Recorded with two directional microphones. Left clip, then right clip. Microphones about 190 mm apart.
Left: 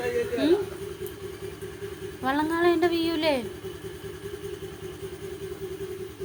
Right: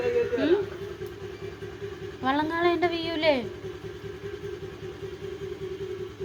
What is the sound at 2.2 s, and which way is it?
A woman's voice, 25° left (ahead or behind).